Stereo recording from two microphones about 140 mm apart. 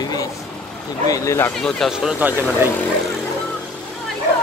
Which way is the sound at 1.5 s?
5° left (ahead or behind).